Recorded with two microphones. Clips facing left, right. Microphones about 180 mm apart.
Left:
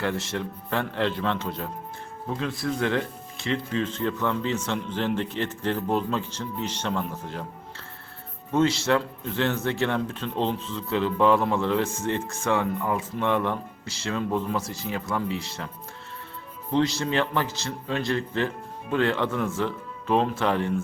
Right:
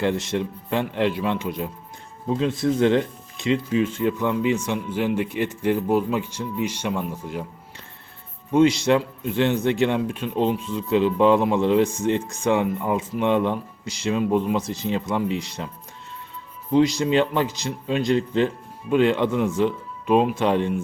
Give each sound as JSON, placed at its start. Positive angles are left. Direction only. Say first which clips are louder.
{"t": 0.0, "sound": "speech", "louder": "right 5 dB", "side_deg": -20}
{"t": 8.5, "sound": "speech", "louder": "right 5 dB", "side_deg": -15}
{"t": 16.7, "sound": "speech", "louder": "right 5 dB", "side_deg": -15}